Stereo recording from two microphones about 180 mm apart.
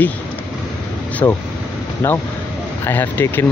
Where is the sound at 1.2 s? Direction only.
20° left (ahead or behind).